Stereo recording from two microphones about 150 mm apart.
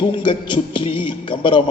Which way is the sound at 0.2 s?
35° left (ahead or behind).